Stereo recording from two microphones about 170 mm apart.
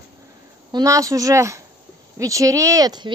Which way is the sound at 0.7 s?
20° right (ahead or behind).